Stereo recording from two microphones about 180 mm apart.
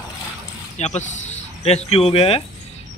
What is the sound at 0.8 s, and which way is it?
Speech, 40° left (ahead or behind).